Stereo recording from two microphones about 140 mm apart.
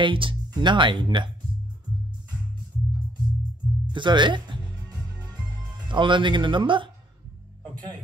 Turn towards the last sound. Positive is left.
turn(degrees=-35)  # may be behind; listen again after turning